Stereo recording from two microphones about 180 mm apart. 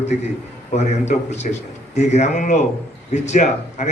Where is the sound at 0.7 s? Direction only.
40° left (ahead or behind).